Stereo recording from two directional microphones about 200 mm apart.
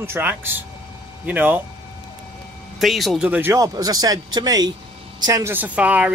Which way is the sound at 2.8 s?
Centre (ahead or behind).